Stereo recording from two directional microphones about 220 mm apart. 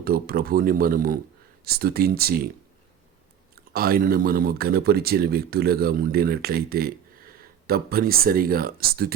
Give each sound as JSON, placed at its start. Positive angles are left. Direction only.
{"t": 0.0, "sound": "speech", "side_deg": -45}
{"t": 3.5, "sound": "speech", "side_deg": -45}